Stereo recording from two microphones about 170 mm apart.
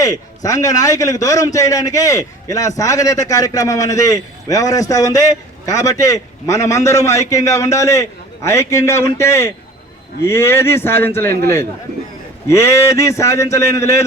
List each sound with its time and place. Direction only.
0.0 s a man's voice: 20° left (ahead or behind)
12.5 s a man's voice: 15° left (ahead or behind)